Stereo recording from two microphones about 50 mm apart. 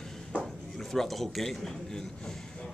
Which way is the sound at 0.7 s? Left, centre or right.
Centre.